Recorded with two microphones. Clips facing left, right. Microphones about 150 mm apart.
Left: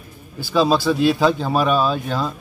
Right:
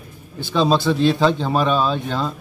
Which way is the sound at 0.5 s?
5° left (ahead or behind).